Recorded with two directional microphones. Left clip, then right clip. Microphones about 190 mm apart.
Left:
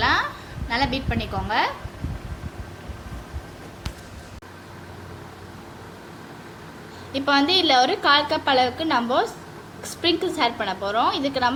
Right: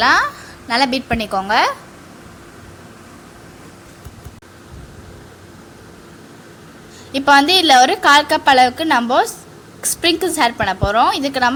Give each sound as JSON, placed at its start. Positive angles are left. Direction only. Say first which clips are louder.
{"t": 0.0, "sound": "a sound", "louder": "right 8 dB", "side_deg": -55}
{"t": 0.7, "sound": "a woman's voice", "louder": "right 8 dB", "side_deg": -55}
{"t": 7.1, "sound": "a woman's voice", "louder": "right 8 dB", "side_deg": -50}